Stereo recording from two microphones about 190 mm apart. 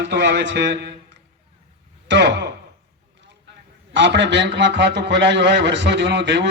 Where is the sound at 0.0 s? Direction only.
65° right (ahead or behind).